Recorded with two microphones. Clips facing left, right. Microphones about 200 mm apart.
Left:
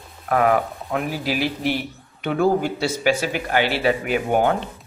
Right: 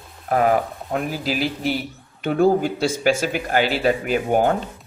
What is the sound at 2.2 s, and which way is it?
A man's voice, 40° right (ahead or behind).